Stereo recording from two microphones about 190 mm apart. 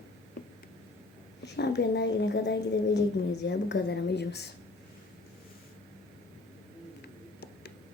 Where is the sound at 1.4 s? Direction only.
60° left (ahead or behind).